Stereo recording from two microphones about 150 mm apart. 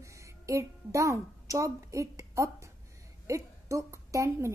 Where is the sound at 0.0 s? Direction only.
20° right (ahead or behind).